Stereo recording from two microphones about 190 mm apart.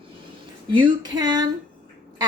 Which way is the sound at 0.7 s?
25° right (ahead or behind).